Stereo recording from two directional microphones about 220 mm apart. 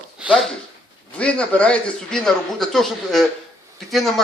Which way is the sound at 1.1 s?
5° left (ahead or behind).